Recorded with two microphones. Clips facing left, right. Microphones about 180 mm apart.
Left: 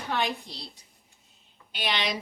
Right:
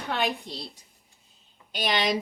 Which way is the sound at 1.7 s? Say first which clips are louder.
Right 4 dB; 45° right (ahead or behind).